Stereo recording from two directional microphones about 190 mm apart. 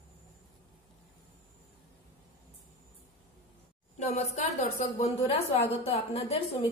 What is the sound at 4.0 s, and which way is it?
A woman's voice, 35° left (ahead or behind).